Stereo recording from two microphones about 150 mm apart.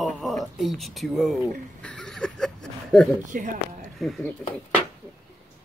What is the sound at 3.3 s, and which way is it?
Speech, 65° right (ahead or behind).